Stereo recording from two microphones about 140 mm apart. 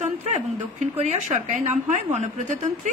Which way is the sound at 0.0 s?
55° right (ahead or behind).